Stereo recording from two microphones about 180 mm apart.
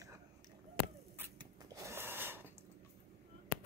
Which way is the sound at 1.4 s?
15° right (ahead or behind).